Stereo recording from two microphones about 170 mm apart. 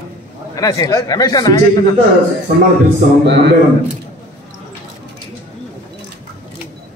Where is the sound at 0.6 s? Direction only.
20° left (ahead or behind).